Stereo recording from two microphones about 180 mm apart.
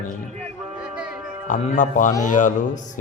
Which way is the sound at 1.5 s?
45° left (ahead or behind).